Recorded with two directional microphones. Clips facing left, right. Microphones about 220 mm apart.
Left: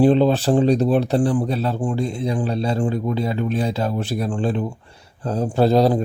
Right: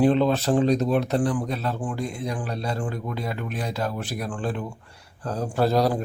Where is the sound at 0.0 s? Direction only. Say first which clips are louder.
Left 4 dB; 30° left (ahead or behind).